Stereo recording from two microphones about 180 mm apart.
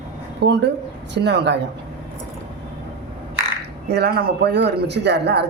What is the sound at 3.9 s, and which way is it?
A man's voice, 65° right (ahead or behind).